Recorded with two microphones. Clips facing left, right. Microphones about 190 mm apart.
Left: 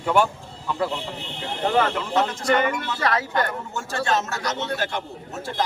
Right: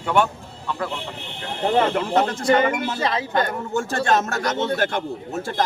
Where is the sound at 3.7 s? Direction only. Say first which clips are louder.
Right 4 dB; 50° right (ahead or behind).